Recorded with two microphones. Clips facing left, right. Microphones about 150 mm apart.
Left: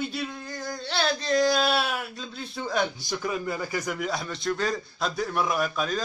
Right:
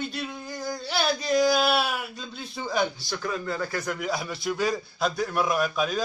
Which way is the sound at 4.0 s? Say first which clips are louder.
Even; centre (ahead or behind).